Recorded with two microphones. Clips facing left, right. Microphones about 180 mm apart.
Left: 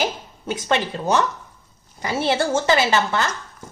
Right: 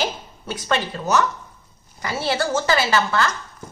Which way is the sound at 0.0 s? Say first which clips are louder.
Left 1 dB; 20° left (ahead or behind).